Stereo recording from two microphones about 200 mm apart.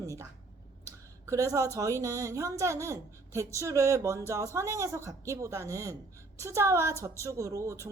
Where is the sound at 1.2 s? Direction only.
15° right (ahead or behind).